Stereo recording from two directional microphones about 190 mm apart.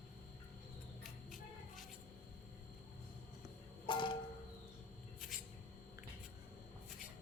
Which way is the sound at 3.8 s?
25° left (ahead or behind).